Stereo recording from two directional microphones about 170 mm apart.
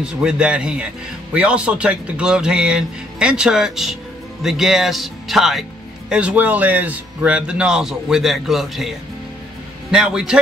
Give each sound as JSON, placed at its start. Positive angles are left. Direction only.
{"t": 0.0, "sound": "speech", "side_deg": -5}